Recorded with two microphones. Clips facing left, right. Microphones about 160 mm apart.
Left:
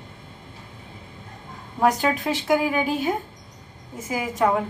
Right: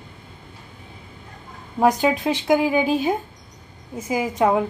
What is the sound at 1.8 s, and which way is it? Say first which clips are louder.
A woman's voice: right 3 dB; 20° right (ahead or behind).